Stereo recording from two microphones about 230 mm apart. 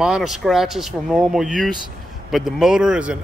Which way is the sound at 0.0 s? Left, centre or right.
Centre.